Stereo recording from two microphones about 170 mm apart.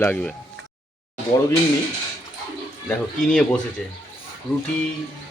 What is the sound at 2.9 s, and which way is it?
Speech, 5° left (ahead or behind).